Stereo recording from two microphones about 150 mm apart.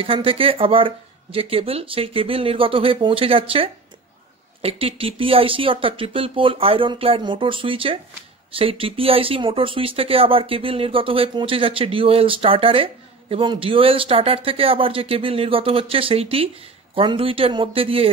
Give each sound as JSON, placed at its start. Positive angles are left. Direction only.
{"t": 0.0, "sound": "speech", "side_deg": -35}